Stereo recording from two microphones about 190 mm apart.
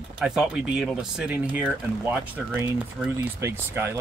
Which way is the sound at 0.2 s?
5° right (ahead or behind).